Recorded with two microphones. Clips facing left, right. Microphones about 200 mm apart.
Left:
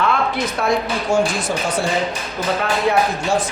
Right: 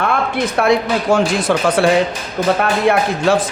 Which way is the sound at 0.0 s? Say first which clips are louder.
Right 2 dB; 55° right (ahead or behind).